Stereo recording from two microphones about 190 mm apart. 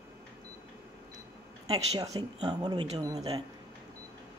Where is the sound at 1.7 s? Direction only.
30° right (ahead or behind).